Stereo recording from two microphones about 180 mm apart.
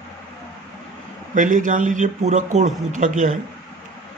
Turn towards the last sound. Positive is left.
turn(degrees=-45)  # may be behind; listen again after turning